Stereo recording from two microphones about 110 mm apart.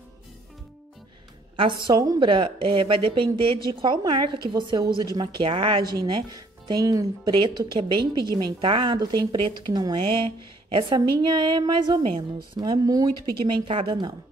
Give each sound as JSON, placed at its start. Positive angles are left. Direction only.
{"t": 1.9, "sound": "a woman's voice", "side_deg": -35}
{"t": 2.1, "sound": "a woman's voice", "side_deg": -50}
{"t": 7.3, "sound": "a woman's voice", "side_deg": -40}
{"t": 8.5, "sound": "speech", "side_deg": -50}
{"t": 13.4, "sound": "speech", "side_deg": -50}